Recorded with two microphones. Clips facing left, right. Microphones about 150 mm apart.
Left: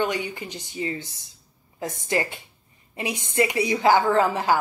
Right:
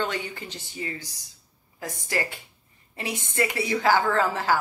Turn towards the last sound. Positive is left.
turn(degrees=15)  # may be behind; listen again after turning